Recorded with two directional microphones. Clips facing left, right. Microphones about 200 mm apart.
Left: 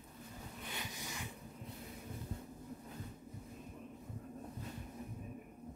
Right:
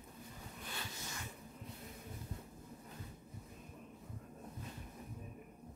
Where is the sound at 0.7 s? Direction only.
15° left (ahead or behind).